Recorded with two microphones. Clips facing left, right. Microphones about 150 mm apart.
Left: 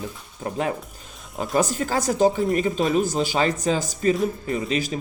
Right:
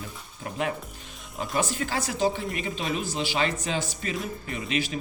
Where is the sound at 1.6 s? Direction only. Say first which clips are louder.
Left 6 dB; 40° left (ahead or behind).